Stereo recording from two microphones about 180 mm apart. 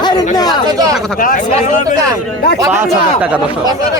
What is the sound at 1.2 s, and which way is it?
Speech, 50° left (ahead or behind).